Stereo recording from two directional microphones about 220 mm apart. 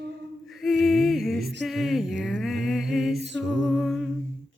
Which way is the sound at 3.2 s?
55° right (ahead or behind).